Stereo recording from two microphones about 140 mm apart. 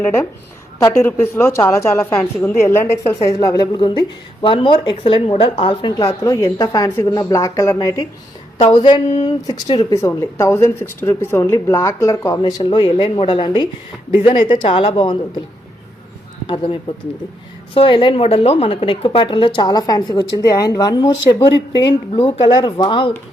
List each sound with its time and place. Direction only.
0.0 s a woman's voice: 15° left (ahead or behind); by 6.1 s 35° left (ahead or behind)
6.2 s a woman's voice: 20° left (ahead or behind)
8.5 s a woman's voice: 35° left (ahead or behind)
9.9 s a woman's voice: 20° left (ahead or behind); by 15.2 s 40° left (ahead or behind)
17.7 s a woman's voice: 35° left (ahead or behind)